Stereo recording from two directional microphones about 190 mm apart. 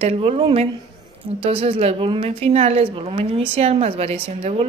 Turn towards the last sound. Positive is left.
turn(degrees=-30)  # may be behind; listen again after turning